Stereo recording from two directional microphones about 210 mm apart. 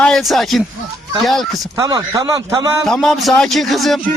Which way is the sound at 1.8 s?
15° right (ahead or behind).